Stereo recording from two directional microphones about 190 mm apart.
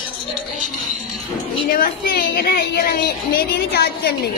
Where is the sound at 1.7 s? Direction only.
50° left (ahead or behind).